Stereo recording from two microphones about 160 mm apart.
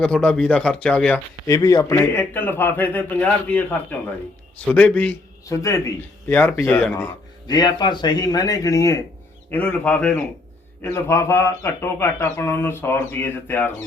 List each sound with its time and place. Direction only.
0.0 s speech: 5° left (ahead or behind)
1.5 s speech: 20° left (ahead or behind)
5.5 s speech: 20° left (ahead or behind)
7.4 s speech: 25° left (ahead or behind)